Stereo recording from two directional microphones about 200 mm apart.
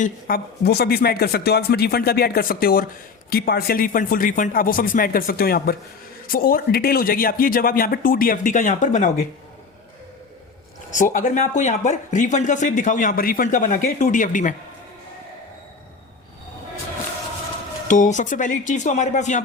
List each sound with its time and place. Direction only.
0.0 s speech: 45° left (ahead or behind)
10.9 s speech: 40° left (ahead or behind)
17.8 s speech: 40° left (ahead or behind)